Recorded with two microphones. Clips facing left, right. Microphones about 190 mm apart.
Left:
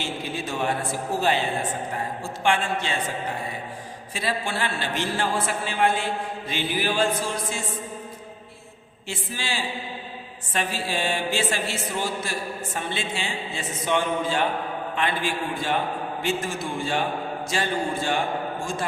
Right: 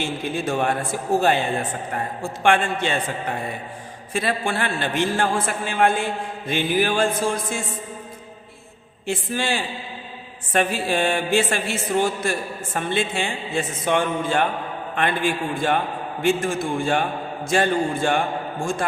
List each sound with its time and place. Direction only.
0.0 s a man's voice: 50° right (ahead or behind)
4.1 s a man's voice: 55° right (ahead or behind)
9.0 s a man's voice: 55° right (ahead or behind)